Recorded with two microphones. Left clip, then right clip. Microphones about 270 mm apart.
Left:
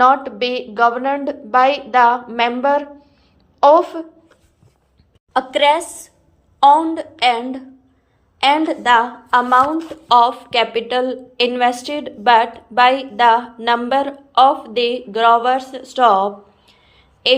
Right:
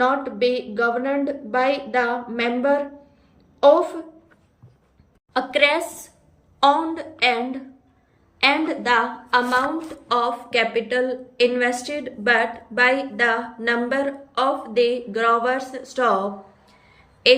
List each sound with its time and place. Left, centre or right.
0.0 s a woman's voice: centre
5.3 s a woman's voice: centre